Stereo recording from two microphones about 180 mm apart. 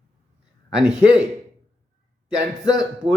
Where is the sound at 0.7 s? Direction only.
5° right (ahead or behind).